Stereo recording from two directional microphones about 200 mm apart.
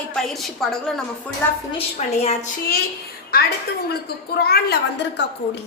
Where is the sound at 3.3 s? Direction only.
50° left (ahead or behind).